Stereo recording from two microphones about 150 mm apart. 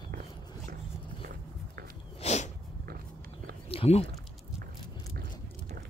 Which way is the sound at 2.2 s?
50° left (ahead or behind).